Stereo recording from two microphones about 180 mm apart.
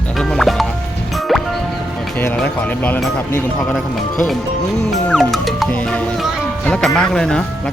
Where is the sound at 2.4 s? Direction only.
10° left (ahead or behind).